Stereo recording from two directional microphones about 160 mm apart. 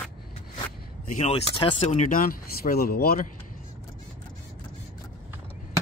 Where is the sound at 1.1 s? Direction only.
40° left (ahead or behind); by 3.3 s 65° left (ahead or behind).